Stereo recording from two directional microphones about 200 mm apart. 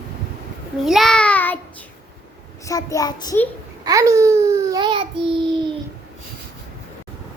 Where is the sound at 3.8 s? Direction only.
15° right (ahead or behind).